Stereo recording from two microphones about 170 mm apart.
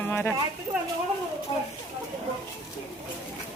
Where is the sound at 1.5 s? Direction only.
35° left (ahead or behind).